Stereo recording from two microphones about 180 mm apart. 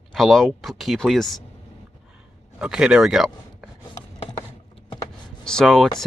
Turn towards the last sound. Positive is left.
turn(degrees=0)  # may be behind; listen again after turning